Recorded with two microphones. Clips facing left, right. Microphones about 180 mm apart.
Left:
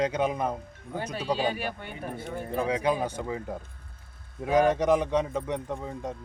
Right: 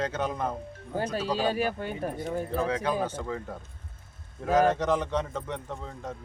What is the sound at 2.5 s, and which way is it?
A man's voice, 15° left (ahead or behind).